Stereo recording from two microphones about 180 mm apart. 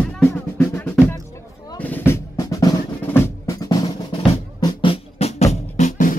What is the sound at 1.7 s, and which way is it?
Drum, 10° left (ahead or behind).